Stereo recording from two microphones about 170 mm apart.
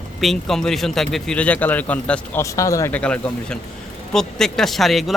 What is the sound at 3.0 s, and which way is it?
Speech, 5° left (ahead or behind).